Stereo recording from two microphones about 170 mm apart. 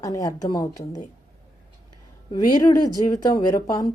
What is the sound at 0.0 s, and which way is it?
Speech, 20° left (ahead or behind).